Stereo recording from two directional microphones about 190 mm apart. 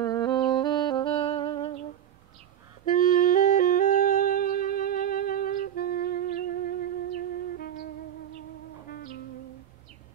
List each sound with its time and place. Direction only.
0.0 s music: 20° left (ahead or behind)
2.8 s music: 45° left (ahead or behind)
8.9 s music: 50° left (ahead or behind)